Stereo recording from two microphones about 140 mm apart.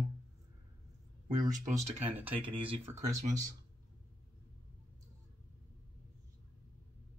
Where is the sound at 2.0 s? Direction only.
15° right (ahead or behind).